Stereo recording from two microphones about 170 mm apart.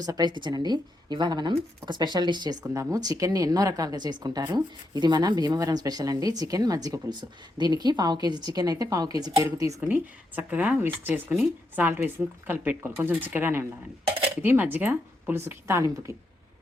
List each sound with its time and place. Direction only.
0.0 s speech: 25° right (ahead or behind)
9.8 s speech: 10° right (ahead or behind)